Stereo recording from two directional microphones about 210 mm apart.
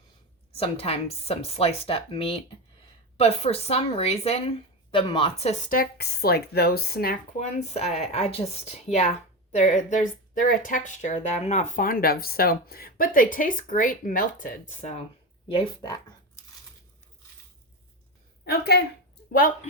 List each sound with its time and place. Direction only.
0.5 s a woman's voice: 25° left (ahead or behind)
18.6 s a woman's voice: 50° left (ahead or behind)